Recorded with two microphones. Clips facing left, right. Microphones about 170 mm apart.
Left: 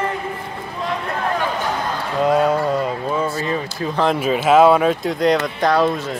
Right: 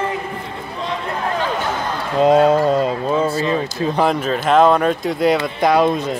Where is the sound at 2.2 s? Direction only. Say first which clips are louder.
Right 4 dB; 25° right (ahead or behind).